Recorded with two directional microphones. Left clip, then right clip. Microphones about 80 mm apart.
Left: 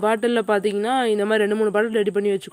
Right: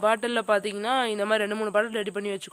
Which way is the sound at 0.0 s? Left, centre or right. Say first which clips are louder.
Left 4 dB; left.